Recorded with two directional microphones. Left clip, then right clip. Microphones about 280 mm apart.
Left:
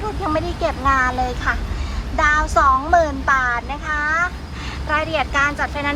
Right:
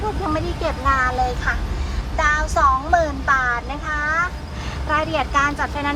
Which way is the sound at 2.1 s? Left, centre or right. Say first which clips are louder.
Left 3 dB; centre.